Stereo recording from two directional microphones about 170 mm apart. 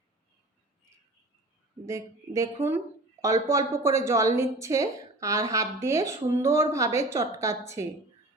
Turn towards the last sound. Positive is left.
turn(degrees=-15)  # may be behind; listen again after turning